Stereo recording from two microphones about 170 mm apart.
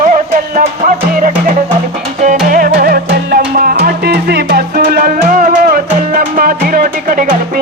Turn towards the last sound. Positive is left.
turn(degrees=-55)  # may be behind; listen again after turning